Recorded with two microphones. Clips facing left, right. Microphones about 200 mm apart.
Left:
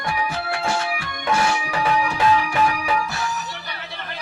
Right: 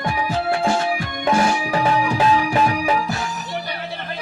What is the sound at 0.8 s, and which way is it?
Music, 30° right (ahead or behind).